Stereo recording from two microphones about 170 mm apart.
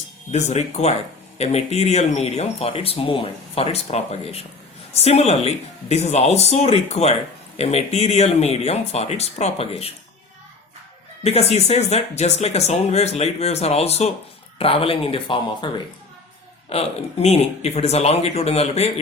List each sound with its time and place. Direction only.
0.3 s speech: 40° left (ahead or behind)
11.2 s speech: 35° left (ahead or behind)